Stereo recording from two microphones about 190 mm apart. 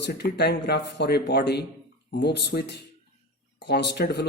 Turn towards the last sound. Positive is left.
turn(degrees=60)  # may be behind; listen again after turning